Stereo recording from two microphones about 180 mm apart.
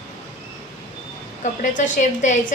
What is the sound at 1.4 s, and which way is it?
A woman's voice, 45° left (ahead or behind).